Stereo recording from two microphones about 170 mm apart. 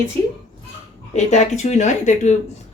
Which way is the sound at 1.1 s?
45° left (ahead or behind).